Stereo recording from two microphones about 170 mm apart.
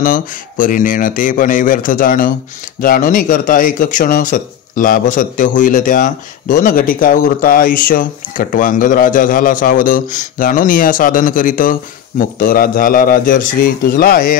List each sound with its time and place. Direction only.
0.0 s a man's voice: 55° left (ahead or behind)